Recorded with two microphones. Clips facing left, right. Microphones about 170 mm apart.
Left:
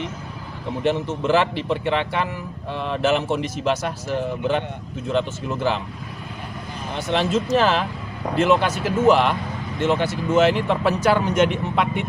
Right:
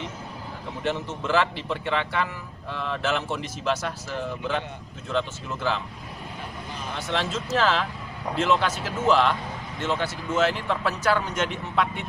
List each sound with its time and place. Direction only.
0.9 s a man's voice: 20° left (ahead or behind)
5.1 s a man's voice: 20° left (ahead or behind)
7.1 s speech: 15° left (ahead or behind)